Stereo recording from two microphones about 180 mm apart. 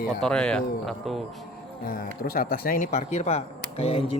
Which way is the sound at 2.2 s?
50° left (ahead or behind).